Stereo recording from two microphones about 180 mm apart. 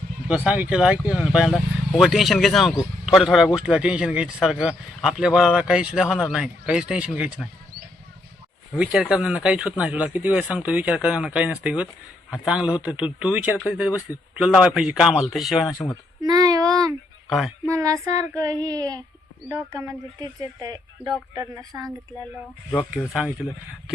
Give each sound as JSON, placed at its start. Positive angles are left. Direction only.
{"t": 0.3, "sound": "speech", "side_deg": -5}
{"t": 8.7, "sound": "speech", "side_deg": -5}
{"t": 16.2, "sound": "a child's voice", "side_deg": -20}
{"t": 17.2, "sound": "speech", "side_deg": 0}
{"t": 17.7, "sound": "a woman's voice", "side_deg": -15}